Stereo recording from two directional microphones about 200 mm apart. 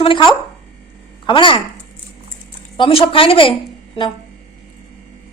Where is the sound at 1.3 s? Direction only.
25° left (ahead or behind).